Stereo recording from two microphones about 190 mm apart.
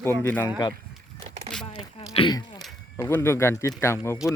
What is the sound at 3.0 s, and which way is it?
Speech, 10° left (ahead or behind).